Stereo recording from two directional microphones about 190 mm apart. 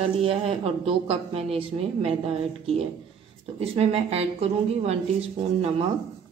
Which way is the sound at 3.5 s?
30° right (ahead or behind).